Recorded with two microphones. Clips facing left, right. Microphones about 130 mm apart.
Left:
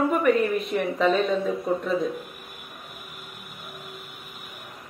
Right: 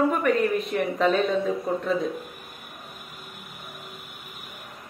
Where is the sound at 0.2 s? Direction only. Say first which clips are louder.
Left 1 dB; centre (ahead or behind).